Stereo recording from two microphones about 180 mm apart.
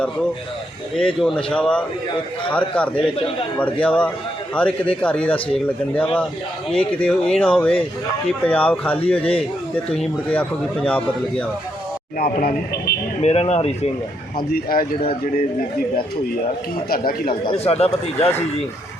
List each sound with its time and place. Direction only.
0.9 s speech: centre (ahead or behind)
2.9 s a man's voice: 30° left (ahead or behind)
3.8 s speech: 5° left (ahead or behind)
9.1 s speech: 30° left (ahead or behind)
10.0 s speech: 5° left (ahead or behind)
12.2 s speech: 55° left (ahead or behind)
13.2 s speech: 35° left (ahead or behind)
14.3 s speech: 55° left (ahead or behind)
16.9 s speech: 55° left (ahead or behind)
17.4 s speech: 30° left (ahead or behind)